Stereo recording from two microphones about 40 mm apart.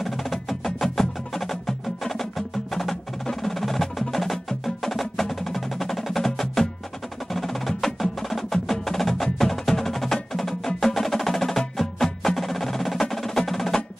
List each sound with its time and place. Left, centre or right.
0.0 s wood block: centre
10.1 s music: centre
13.1 s percussion: centre